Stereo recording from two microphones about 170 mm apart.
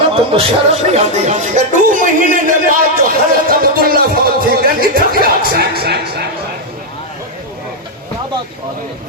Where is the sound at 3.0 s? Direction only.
60° right (ahead or behind).